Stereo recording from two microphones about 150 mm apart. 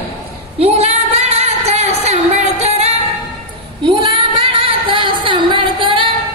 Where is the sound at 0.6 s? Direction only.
45° right (ahead or behind).